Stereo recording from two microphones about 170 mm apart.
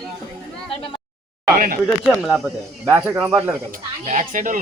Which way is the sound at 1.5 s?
60° right (ahead or behind).